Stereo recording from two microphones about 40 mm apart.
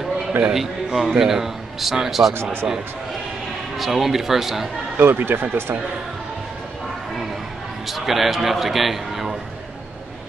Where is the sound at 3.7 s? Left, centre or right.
Centre.